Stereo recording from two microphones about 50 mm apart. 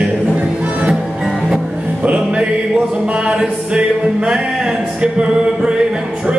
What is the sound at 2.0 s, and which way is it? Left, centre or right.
Music, right.